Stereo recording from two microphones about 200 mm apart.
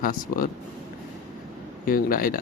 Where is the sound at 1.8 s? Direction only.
45° left (ahead or behind).